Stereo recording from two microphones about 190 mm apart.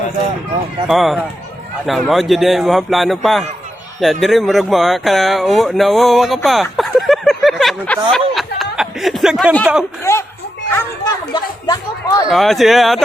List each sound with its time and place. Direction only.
0.9 s speech: centre (ahead or behind)
8.1 s a sound: centre (ahead or behind)
10.0 s speech: 15° left (ahead or behind)
10.7 s children playing: 10° left (ahead or behind)
11.3 s speech: 20° left (ahead or behind)
12.3 s speech: centre (ahead or behind)